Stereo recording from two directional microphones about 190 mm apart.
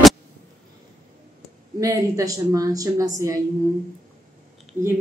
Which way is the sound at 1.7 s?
15° right (ahead or behind).